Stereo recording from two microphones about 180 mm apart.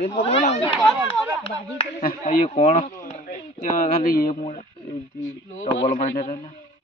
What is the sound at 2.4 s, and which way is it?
Speech, 40° left (ahead or behind).